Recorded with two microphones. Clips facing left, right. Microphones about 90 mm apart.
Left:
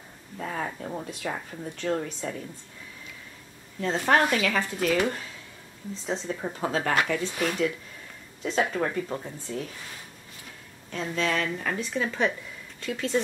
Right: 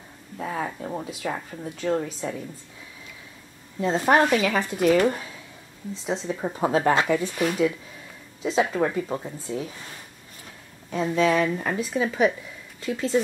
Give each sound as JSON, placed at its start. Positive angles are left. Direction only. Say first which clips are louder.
{"t": 0.4, "sound": "speech", "louder": "right 3 dB", "side_deg": -5}
{"t": 3.8, "sound": "a woman's voice", "louder": "right 3 dB", "side_deg": -15}
{"t": 6.0, "sound": "a woman's voice", "louder": "right 3 dB", "side_deg": -5}
{"t": 6.4, "sound": "speech", "louder": "right 9 dB", "side_deg": -20}
{"t": 7.3, "sound": "a woman's voice", "louder": "right 4 dB", "side_deg": -5}
{"t": 10.9, "sound": "a woman's voice", "louder": "right 7 dB", "side_deg": -10}